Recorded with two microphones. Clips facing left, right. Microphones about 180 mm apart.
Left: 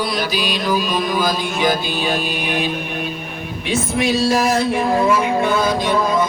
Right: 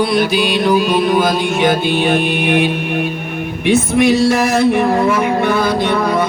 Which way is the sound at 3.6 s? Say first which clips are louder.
Right 7 dB; 70° right (ahead or behind).